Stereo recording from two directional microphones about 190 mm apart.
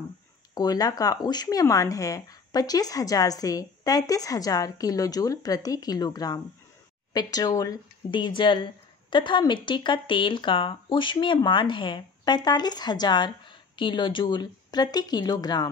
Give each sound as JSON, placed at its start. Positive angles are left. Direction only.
{"t": 0.6, "sound": "speech", "side_deg": 20}